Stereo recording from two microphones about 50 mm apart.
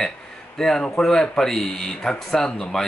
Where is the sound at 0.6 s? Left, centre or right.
Centre.